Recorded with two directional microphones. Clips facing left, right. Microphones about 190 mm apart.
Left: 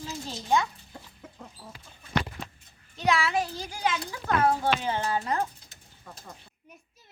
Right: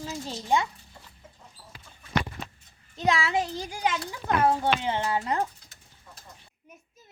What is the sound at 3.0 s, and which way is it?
A child's voice, 25° right (ahead or behind).